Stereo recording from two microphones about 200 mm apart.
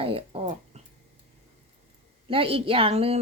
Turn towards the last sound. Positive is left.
turn(degrees=-30)  # may be behind; listen again after turning